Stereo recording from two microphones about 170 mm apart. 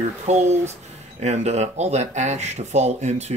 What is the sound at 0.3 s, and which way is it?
Speech, 40° right (ahead or behind).